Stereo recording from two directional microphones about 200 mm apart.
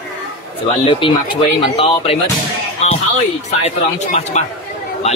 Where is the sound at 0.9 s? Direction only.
25° left (ahead or behind).